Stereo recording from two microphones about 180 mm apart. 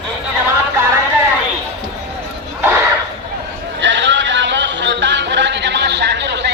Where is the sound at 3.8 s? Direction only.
90° right.